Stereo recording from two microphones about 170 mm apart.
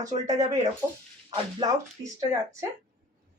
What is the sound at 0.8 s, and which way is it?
Speech, 20° right (ahead or behind).